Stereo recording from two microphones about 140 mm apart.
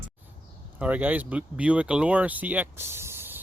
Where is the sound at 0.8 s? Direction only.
10° right (ahead or behind).